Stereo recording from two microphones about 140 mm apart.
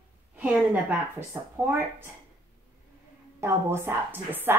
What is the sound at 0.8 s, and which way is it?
A woman's voice, 15° right (ahead or behind).